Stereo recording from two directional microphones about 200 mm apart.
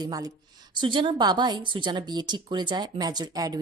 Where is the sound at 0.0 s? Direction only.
20° right (ahead or behind).